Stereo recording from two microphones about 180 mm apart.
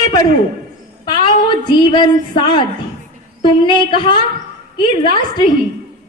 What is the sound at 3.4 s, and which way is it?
Speech, 25° left (ahead or behind).